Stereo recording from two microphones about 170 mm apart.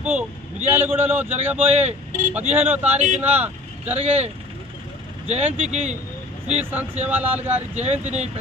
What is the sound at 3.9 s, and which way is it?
Speech, 40° right (ahead or behind).